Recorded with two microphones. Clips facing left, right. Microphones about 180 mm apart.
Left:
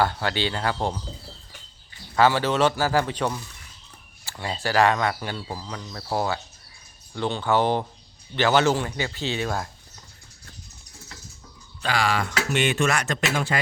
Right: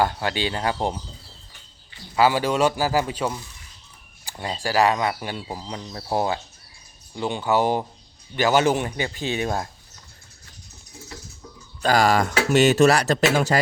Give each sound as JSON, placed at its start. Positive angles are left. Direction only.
{"t": 0.0, "sound": "speech", "side_deg": -15}
{"t": 2.1, "sound": "speech", "side_deg": -10}
{"t": 4.3, "sound": "speech", "side_deg": -25}
{"t": 4.6, "sound": "speech", "side_deg": -10}
{"t": 11.8, "sound": "speech", "side_deg": -40}